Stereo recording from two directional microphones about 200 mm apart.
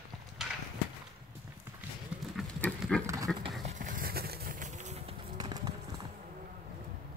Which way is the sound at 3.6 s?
40° right (ahead or behind).